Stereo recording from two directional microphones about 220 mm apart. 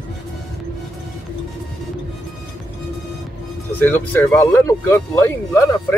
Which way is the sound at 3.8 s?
10° left (ahead or behind).